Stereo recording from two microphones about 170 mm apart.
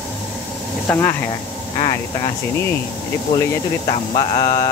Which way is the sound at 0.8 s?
15° left (ahead or behind).